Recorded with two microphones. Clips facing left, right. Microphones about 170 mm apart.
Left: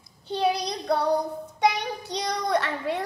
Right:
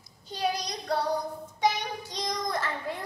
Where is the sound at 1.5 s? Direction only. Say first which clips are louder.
Left 3 dB; 65° left (ahead or behind).